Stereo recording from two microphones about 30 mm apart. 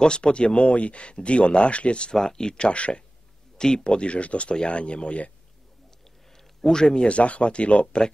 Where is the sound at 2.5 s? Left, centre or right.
Left.